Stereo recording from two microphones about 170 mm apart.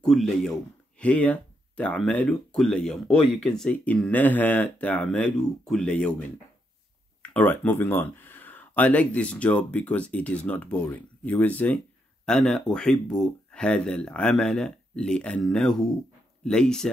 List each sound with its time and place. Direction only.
0.0 s speech: centre (ahead or behind)